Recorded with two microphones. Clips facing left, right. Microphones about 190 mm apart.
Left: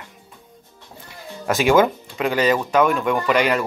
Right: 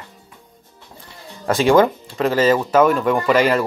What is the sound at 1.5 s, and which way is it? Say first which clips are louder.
Speech: right 2 dB; centre (ahead or behind).